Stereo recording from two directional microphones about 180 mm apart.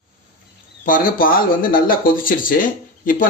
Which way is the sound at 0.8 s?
50° left (ahead or behind).